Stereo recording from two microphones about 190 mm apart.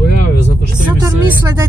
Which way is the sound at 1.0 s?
15° right (ahead or behind).